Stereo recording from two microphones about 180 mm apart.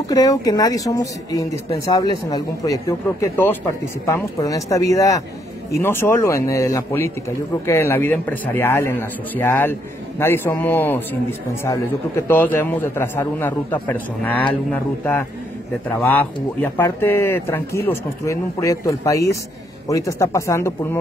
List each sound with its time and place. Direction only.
0.0 s a man's voice: 20° left (ahead or behind)